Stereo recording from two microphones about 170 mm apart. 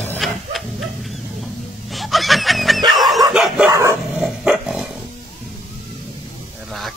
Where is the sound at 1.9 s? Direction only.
Centre (ahead or behind).